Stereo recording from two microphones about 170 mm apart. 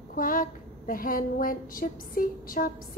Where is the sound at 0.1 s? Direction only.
55° left (ahead or behind).